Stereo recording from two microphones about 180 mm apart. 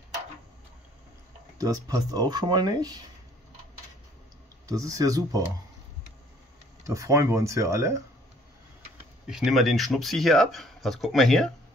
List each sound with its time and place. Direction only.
1.6 s speech: 20° right (ahead or behind)
4.6 s speech: 20° right (ahead or behind)
6.9 s speech: 15° right (ahead or behind)
9.3 s speech: centre (ahead or behind)